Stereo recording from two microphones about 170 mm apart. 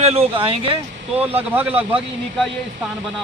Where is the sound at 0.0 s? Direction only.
35° right (ahead or behind).